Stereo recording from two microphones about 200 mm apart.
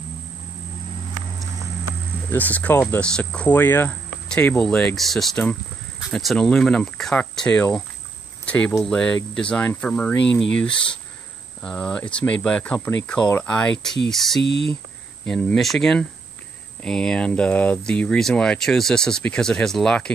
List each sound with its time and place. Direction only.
2.3 s speech: 10° left (ahead or behind)
11.6 s speech: 5° left (ahead or behind)
14.4 s speech: 60° left (ahead or behind)
15.2 s speech: 5° left (ahead or behind)